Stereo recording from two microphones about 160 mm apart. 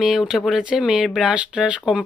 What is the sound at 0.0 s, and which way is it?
Speech, 5° right (ahead or behind).